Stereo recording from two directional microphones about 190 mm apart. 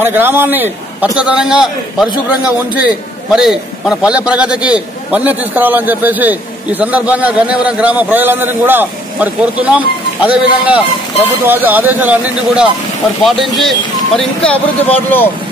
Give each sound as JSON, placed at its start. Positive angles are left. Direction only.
{"t": 0.0, "sound": "a man's voice", "side_deg": -10}
{"t": 13.6, "sound": "speech", "side_deg": 0}